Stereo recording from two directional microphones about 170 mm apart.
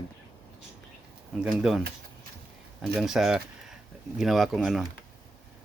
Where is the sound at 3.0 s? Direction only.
Centre (ahead or behind).